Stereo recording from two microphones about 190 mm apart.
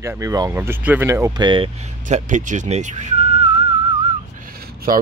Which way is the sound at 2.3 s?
40° right (ahead or behind).